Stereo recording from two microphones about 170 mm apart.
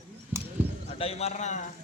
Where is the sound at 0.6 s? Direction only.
10° right (ahead or behind).